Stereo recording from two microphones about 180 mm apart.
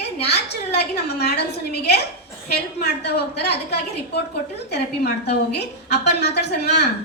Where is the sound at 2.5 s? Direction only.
65° left (ahead or behind).